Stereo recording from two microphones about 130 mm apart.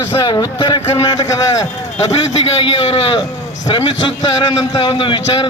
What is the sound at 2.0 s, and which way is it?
A man's voice, 50° left (ahead or behind).